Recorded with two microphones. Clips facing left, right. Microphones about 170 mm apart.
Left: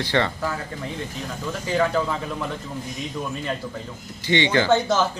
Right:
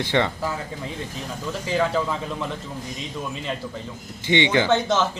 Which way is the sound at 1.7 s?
Centre (ahead or behind).